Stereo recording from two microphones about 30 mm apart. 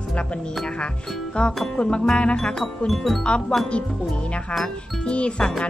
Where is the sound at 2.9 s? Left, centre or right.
Centre.